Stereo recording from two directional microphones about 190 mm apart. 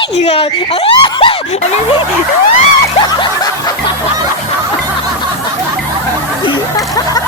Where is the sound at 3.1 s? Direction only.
20° left (ahead or behind).